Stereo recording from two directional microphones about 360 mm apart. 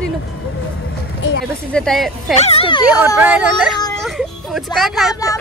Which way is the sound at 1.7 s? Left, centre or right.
Centre.